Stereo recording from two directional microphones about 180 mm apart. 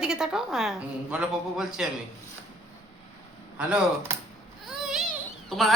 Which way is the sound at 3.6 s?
5° right (ahead or behind).